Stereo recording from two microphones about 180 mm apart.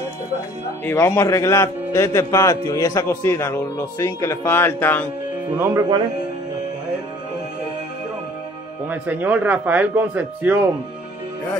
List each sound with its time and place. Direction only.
0.8 s a man's voice: 15° left (ahead or behind)
5.6 s speech: 20° right (ahead or behind)
8.8 s speech: 10° right (ahead or behind)